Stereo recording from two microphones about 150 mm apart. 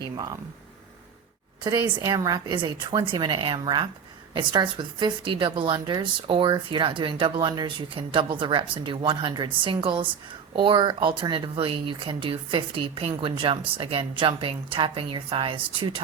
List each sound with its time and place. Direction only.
0.0 s a woman's voice: 25° right (ahead or behind)
1.8 s a woman's voice: 25° right (ahead or behind)